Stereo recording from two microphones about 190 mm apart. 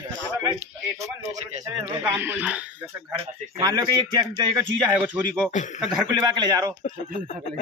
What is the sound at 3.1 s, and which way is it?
A man's voice, 20° right (ahead or behind).